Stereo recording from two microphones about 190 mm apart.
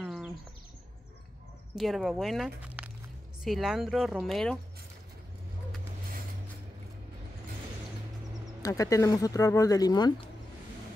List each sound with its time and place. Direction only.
0.0 s a sound: 5° right (ahead or behind)
1.8 s speech: centre (ahead or behind)
8.6 s speech: 15° left (ahead or behind)